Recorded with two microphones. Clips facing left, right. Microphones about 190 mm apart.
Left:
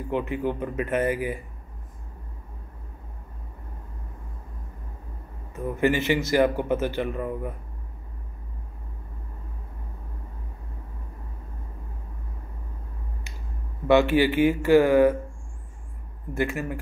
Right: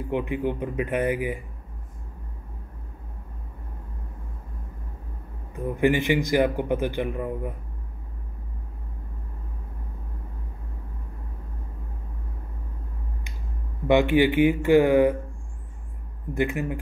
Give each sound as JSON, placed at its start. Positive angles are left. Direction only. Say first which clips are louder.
{"t": 0.1, "sound": "a man's voice", "louder": "even", "side_deg": -15}
{"t": 5.5, "sound": "a man's voice", "louder": "right 1 dB", "side_deg": -15}
{"t": 13.8, "sound": "a man's voice", "louder": "even", "side_deg": -15}
{"t": 16.3, "sound": "a man's voice", "louder": "right 1 dB", "side_deg": -20}